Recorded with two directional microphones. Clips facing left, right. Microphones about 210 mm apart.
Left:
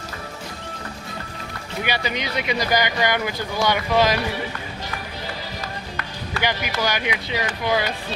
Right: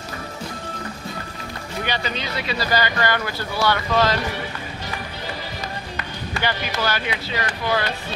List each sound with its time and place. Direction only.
1.9 s speech: 15° left (ahead or behind)
6.4 s speech: 15° left (ahead or behind)